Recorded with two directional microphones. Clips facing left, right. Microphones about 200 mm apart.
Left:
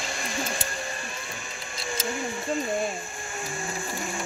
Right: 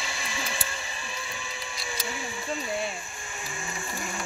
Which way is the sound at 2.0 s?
45° left (ahead or behind).